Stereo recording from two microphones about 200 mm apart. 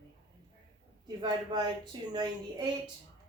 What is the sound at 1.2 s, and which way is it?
Speech, 20° right (ahead or behind).